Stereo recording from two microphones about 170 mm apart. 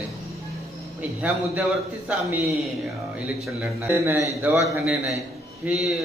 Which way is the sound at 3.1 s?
5° right (ahead or behind).